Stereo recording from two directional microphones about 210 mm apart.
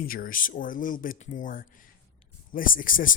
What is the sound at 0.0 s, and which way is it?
Speech, 45° left (ahead or behind).